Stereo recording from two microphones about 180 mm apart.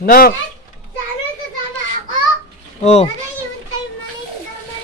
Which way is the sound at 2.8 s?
35° left (ahead or behind).